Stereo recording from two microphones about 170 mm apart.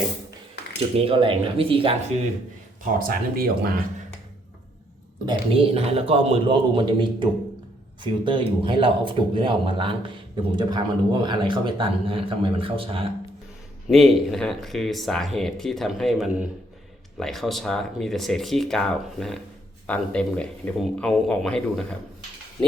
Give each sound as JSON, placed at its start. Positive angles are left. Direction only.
{"t": 0.9, "sound": "a man's voice", "side_deg": -30}
{"t": 3.0, "sound": "speech", "side_deg": -60}
{"t": 5.2, "sound": "a man's voice", "side_deg": -30}
{"t": 13.8, "sound": "speech", "side_deg": 0}